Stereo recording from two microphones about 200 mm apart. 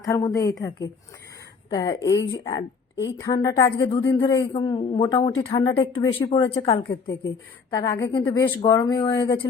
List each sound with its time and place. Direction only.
0.0 s a woman's voice: 15° left (ahead or behind)
1.7 s a woman's voice: 20° left (ahead or behind)